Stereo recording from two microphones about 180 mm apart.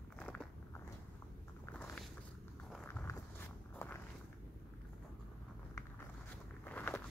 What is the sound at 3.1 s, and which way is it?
Walk, 15° left (ahead or behind).